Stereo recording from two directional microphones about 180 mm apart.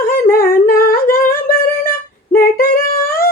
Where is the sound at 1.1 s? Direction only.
15° left (ahead or behind).